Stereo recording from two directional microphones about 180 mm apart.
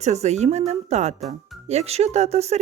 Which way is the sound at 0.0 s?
40° right (ahead or behind).